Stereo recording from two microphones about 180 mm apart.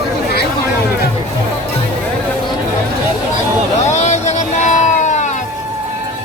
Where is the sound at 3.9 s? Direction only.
40° left (ahead or behind).